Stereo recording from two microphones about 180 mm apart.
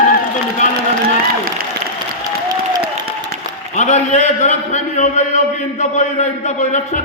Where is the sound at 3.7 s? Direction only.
40° left (ahead or behind).